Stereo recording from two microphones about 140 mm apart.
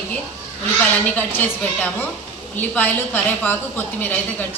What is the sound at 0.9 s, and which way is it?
A woman's voice, 10° left (ahead or behind).